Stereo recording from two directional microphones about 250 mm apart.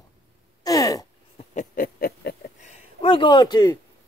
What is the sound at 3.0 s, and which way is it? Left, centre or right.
Speech, centre.